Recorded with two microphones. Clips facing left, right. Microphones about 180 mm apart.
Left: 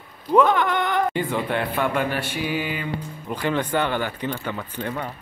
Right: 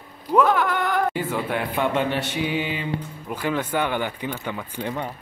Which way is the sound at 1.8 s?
25° right (ahead or behind).